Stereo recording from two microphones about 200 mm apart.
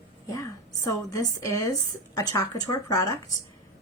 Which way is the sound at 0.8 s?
15° left (ahead or behind).